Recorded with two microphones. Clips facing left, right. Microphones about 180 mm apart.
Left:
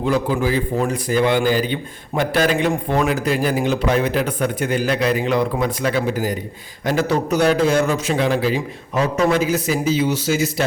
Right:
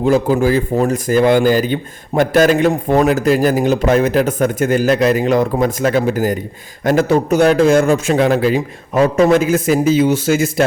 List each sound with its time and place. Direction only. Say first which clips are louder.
0.0 s a man's voice: right 6 dB; 45° right (ahead or behind)